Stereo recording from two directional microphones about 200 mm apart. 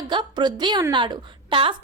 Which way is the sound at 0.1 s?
20° right (ahead or behind).